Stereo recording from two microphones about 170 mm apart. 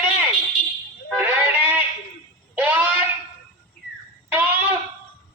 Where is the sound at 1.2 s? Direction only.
10° right (ahead or behind).